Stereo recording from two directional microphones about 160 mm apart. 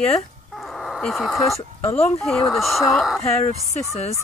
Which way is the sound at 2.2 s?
Centre (ahead or behind).